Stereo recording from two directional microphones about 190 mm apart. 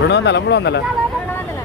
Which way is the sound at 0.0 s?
65° left (ahead or behind).